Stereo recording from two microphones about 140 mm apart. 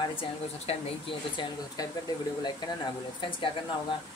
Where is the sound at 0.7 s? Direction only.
45° left (ahead or behind).